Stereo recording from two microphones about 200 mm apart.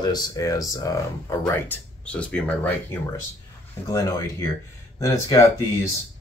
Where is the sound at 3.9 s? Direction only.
15° left (ahead or behind).